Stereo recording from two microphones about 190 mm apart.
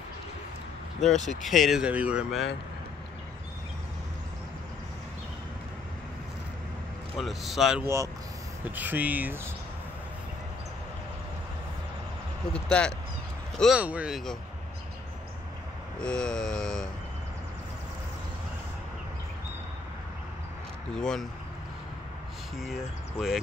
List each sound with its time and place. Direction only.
1.0 s speech: centre (ahead or behind)
7.2 s speech: centre (ahead or behind)
7.8 s speech: 15° right (ahead or behind)
12.5 s speech: 5° left (ahead or behind)
16.0 s speech: 5° left (ahead or behind)
20.9 s speech: 5° left (ahead or behind)
22.6 s speech: centre (ahead or behind)